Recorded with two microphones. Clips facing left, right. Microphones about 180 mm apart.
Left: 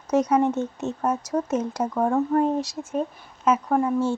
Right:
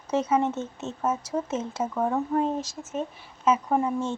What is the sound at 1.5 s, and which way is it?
Speech, 15° left (ahead or behind).